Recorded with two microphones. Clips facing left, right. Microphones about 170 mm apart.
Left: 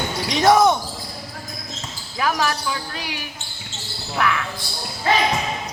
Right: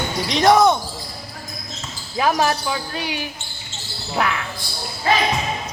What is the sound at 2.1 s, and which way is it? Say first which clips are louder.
Speech: right 3 dB; 25° right (ahead or behind).